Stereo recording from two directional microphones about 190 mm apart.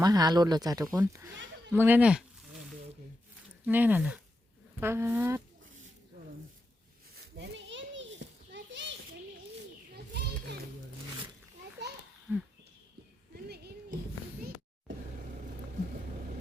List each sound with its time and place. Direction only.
0.0 s speech: 20° right (ahead or behind)
3.7 s speech: 10° right (ahead or behind)
7.2 s children playing: 60° right (ahead or behind)
8.5 s a sound: 70° right (ahead or behind)
9.9 s children playing: 60° right (ahead or behind)
12.3 s speech: 10° right (ahead or behind)
13.3 s a sound: 60° right (ahead or behind)